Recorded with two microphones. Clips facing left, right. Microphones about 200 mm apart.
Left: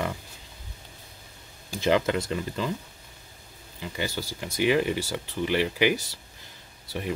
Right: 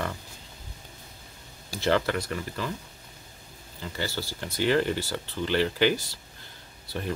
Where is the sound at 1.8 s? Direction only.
15° left (ahead or behind).